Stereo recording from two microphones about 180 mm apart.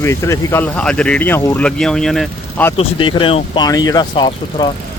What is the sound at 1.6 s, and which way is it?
Speech, 5° left (ahead or behind).